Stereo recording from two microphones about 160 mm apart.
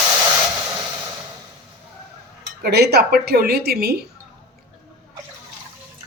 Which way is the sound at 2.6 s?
90° right.